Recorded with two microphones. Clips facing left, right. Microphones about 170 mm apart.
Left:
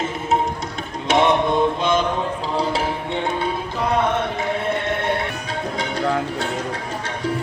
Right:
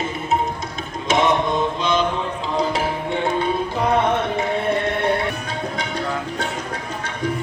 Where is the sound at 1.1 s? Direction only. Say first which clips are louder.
Left 2 dB; 65° left (ahead or behind).